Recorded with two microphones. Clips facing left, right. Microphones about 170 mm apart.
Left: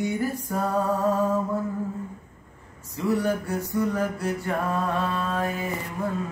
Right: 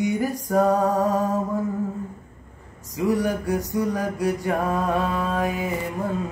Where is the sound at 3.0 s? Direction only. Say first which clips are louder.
Right 2 dB; 15° right (ahead or behind).